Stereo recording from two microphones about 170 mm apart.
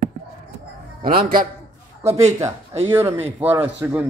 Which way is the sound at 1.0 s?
55° right (ahead or behind).